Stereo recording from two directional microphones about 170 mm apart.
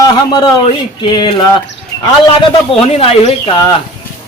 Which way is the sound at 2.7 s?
35° left (ahead or behind).